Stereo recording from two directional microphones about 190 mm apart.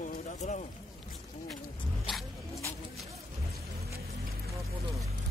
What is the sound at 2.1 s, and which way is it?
Music, centre (ahead or behind).